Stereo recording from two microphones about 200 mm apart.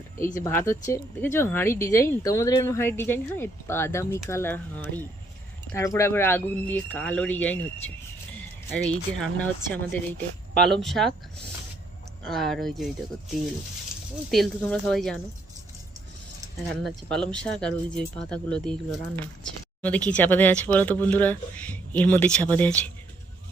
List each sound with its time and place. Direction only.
0.3 s speech: 15° left (ahead or behind)
12.2 s speech: centre (ahead or behind)
14.3 s speech: centre (ahead or behind)
16.8 s speech: 5° left (ahead or behind)